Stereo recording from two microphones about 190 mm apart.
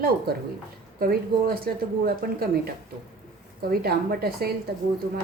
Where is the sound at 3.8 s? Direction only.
55° right (ahead or behind).